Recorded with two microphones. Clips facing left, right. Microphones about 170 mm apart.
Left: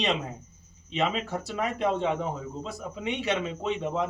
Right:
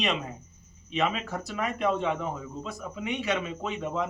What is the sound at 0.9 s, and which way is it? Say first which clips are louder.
Speech: left 1 dB; 30° left (ahead or behind).